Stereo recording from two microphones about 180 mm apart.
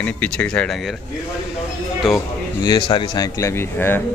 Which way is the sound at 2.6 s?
25° left (ahead or behind).